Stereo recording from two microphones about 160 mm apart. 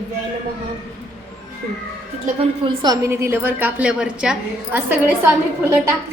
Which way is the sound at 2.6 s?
25° right (ahead or behind).